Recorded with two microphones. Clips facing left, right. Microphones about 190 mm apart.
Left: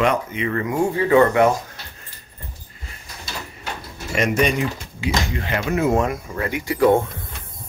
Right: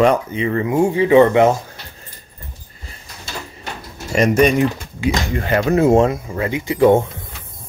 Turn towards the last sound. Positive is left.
turn(degrees=-20)  # may be behind; listen again after turning